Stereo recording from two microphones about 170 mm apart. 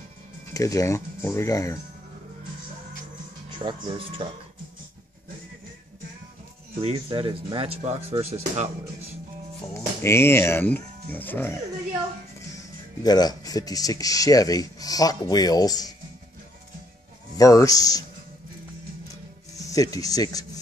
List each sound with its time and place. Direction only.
0.5 s speech: 20° left (ahead or behind)
3.4 s speech: 25° right (ahead or behind)
6.8 s speech: 35° right (ahead or behind)
9.8 s speech: 15° left (ahead or behind)
12.5 s speech: 25° left (ahead or behind)
17.4 s speech: 20° left (ahead or behind)
19.6 s speech: 20° left (ahead or behind)